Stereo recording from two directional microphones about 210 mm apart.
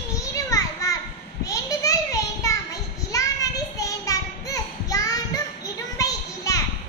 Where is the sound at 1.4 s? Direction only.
15° left (ahead or behind).